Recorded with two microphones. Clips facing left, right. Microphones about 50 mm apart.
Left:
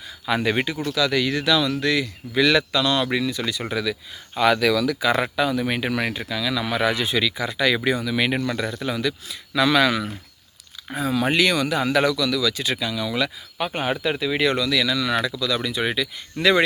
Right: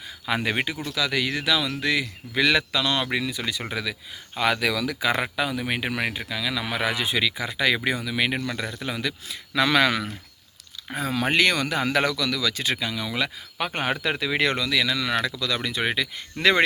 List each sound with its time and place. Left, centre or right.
0.3 s speech: centre
4.8 s speech: right
5.2 s speech: centre
8.1 s speech: centre
8.8 s speech: right
14.0 s speech: right
14.4 s speech: right